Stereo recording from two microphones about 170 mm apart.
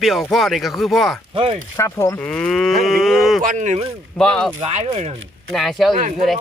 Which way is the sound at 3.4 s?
45° right (ahead or behind).